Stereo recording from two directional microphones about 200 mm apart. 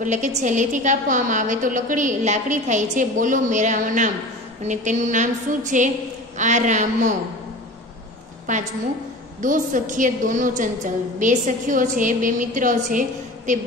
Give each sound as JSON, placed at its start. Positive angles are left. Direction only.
{"t": 0.0, "sound": "a woman's voice", "side_deg": -35}
{"t": 8.5, "sound": "a woman's voice", "side_deg": -40}